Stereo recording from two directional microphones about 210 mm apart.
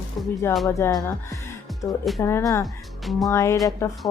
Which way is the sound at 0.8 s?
10° left (ahead or behind).